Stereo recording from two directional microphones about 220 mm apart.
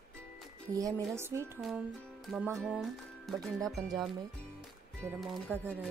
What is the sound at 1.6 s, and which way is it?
Speech, centre (ahead or behind).